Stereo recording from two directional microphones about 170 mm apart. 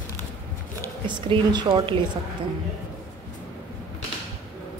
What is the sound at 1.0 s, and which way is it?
Speech, 25° right (ahead or behind).